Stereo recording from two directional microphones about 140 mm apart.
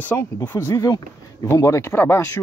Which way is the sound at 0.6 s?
20° left (ahead or behind).